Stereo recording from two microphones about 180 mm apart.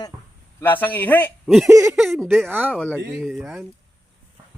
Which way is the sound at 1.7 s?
15° right (ahead or behind).